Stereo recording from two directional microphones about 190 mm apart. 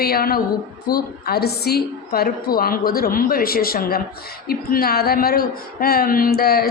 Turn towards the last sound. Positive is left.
turn(degrees=50)  # may be behind; listen again after turning